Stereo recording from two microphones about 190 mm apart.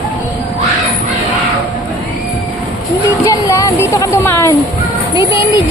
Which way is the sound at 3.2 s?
15° left (ahead or behind).